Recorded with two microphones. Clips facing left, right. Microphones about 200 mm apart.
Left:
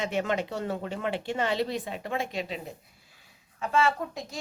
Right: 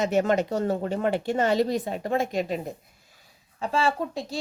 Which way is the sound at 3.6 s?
30° right (ahead or behind).